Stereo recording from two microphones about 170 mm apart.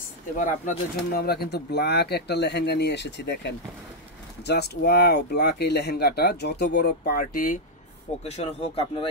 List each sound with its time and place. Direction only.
0.4 s speech: 60° left (ahead or behind); by 3.5 s 90° left
4.5 s speech: 75° left (ahead or behind); by 7.6 s 55° left (ahead or behind)
8.2 s speech: 40° left (ahead or behind)